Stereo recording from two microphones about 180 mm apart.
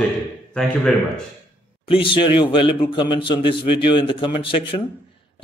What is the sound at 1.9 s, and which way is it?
A man's voice, 30° left (ahead or behind).